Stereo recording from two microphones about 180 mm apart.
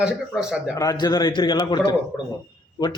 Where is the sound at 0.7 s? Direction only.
20° left (ahead or behind).